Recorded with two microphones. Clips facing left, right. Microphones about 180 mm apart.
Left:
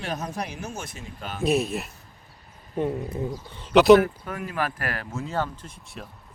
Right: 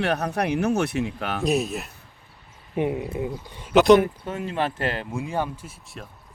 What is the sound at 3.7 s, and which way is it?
Speech, 5° left (ahead or behind).